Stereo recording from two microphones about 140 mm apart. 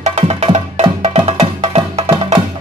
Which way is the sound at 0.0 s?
50° right (ahead or behind).